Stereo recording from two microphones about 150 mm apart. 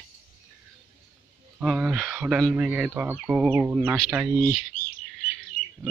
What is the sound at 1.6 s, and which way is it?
Speech, centre (ahead or behind).